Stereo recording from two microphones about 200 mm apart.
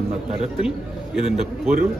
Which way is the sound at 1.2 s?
Centre (ahead or behind).